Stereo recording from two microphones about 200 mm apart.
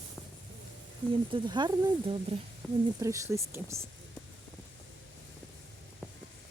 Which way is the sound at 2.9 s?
15° right (ahead or behind).